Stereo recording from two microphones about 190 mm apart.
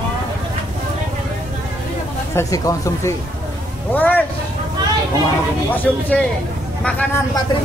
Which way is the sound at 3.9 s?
10° left (ahead or behind).